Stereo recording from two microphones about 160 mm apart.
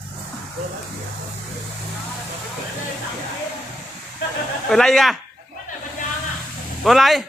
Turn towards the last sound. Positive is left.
turn(degrees=0)  # may be behind; listen again after turning